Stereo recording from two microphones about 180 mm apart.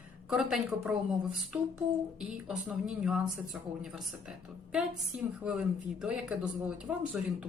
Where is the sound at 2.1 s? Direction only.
5° right (ahead or behind).